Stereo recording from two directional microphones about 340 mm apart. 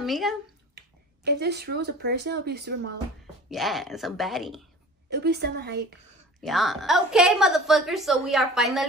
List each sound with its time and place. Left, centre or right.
0.0 s speech: centre
0.7 s speech: right
3.4 s a woman's voice: centre
5.1 s a woman's voice: right
6.4 s a woman's voice: centre